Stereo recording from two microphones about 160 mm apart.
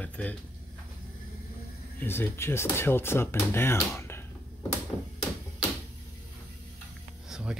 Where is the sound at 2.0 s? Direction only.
15° left (ahead or behind).